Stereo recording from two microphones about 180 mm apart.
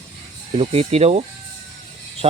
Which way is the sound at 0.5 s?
35° right (ahead or behind).